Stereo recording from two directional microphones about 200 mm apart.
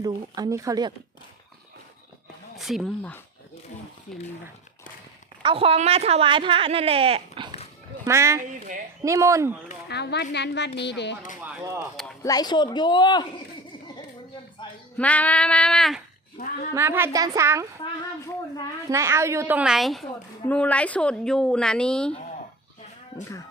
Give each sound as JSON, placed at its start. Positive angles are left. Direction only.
{"t": 0.0, "sound": "speech", "side_deg": -20}
{"t": 2.6, "sound": "speech", "side_deg": 0}
{"t": 5.4, "sound": "speech", "side_deg": -25}
{"t": 8.0, "sound": "a woman's voice", "side_deg": -15}
{"t": 9.9, "sound": "speech", "side_deg": 55}
{"t": 11.4, "sound": "a woman's voice", "side_deg": -15}
{"t": 12.2, "sound": "a woman's voice", "side_deg": 20}
{"t": 14.9, "sound": "a woman's voice", "side_deg": 5}
{"t": 16.7, "sound": "a woman's voice", "side_deg": -10}
{"t": 18.9, "sound": "a woman's voice", "side_deg": -15}